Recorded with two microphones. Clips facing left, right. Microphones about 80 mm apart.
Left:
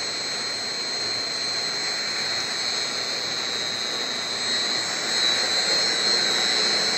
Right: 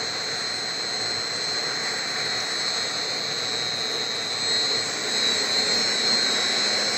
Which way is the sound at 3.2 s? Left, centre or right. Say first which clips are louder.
Even; left.